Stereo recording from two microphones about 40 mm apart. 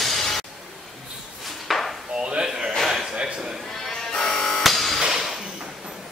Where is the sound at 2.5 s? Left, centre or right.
Centre.